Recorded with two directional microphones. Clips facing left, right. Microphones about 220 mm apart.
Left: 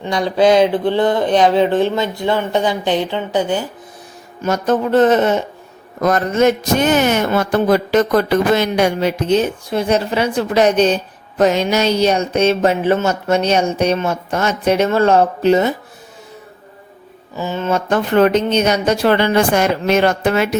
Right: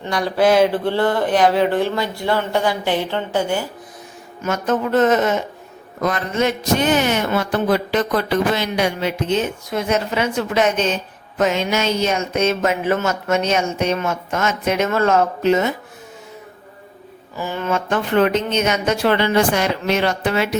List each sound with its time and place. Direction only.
0.0 s speech: 20° left (ahead or behind)
4.4 s a man's voice: 35° left (ahead or behind)
6.0 s a man's voice: 45° left (ahead or behind)
17.3 s speech: 20° left (ahead or behind)
17.7 s speech: 40° left (ahead or behind)